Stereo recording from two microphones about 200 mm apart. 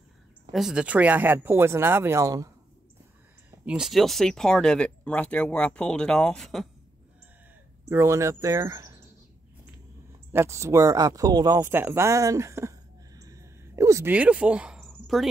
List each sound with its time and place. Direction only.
0.5 s speech: centre (ahead or behind)
3.6 s speech: 5° right (ahead or behind)
7.9 s speech: 15° right (ahead or behind)
10.3 s speech: 15° right (ahead or behind)